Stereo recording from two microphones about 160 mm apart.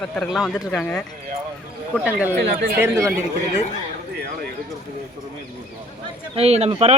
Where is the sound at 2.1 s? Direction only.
10° right (ahead or behind).